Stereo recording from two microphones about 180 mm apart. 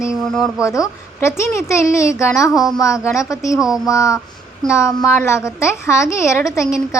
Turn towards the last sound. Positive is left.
turn(degrees=15)  # may be behind; listen again after turning